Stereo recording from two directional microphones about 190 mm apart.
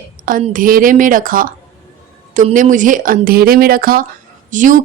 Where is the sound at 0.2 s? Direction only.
50° right (ahead or behind).